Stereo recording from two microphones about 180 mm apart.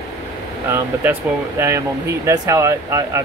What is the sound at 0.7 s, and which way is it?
Speech, 10° right (ahead or behind).